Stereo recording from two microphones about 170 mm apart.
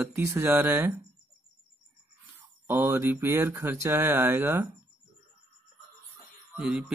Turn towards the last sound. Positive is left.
turn(degrees=-5)  # may be behind; listen again after turning